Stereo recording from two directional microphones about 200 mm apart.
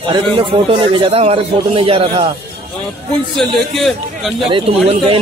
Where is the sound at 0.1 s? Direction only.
25° right (ahead or behind).